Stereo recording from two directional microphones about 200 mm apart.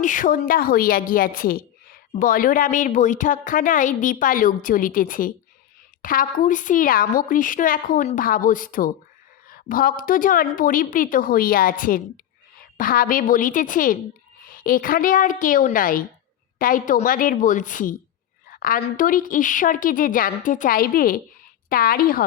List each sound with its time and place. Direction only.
0.0 s a woman's voice: 40° left (ahead or behind)